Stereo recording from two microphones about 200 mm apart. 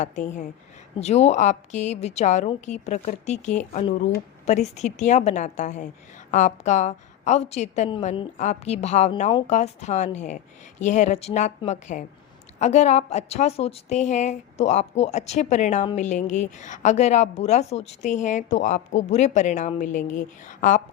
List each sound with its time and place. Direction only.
0.0 s a woman's voice: 35° left (ahead or behind)